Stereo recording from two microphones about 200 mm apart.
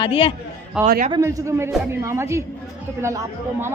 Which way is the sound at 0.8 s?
45° right (ahead or behind).